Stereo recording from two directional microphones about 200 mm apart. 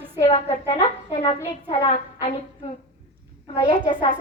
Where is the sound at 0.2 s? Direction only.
30° left (ahead or behind).